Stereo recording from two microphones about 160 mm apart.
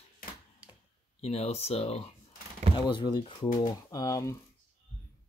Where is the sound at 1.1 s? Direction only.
40° left (ahead or behind); by 4.3 s 20° left (ahead or behind).